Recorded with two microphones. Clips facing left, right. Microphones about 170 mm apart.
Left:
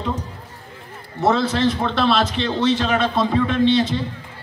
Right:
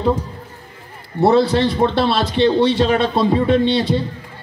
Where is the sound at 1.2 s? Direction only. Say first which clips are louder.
Right 4 dB; 35° right (ahead or behind).